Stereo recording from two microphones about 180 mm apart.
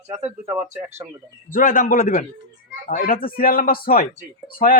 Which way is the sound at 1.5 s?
50° left (ahead or behind).